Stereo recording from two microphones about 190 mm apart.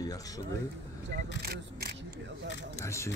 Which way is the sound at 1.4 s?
55° right (ahead or behind).